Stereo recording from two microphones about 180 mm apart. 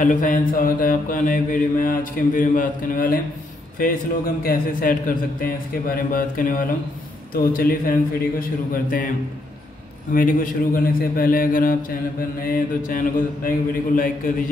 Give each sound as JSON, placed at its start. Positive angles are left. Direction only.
{"t": 0.0, "sound": "mantra", "side_deg": 45}
{"t": 4.4, "sound": "mantra", "side_deg": 50}
{"t": 10.1, "sound": "mantra", "side_deg": 50}